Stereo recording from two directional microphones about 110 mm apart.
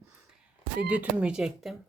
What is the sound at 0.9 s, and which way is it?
Speech, 10° right (ahead or behind).